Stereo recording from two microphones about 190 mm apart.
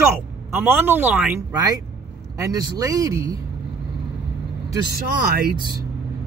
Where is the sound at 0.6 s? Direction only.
10° right (ahead or behind).